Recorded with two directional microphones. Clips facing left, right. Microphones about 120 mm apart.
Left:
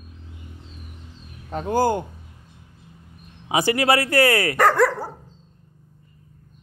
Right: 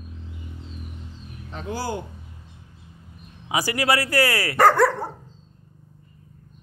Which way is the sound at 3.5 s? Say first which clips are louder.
Left 3 dB; 25° left (ahead or behind).